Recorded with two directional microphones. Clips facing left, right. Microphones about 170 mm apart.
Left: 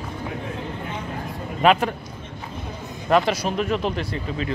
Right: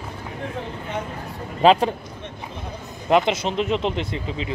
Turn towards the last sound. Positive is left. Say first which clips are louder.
# even
turn(degrees=-20)  # may be behind; listen again after turning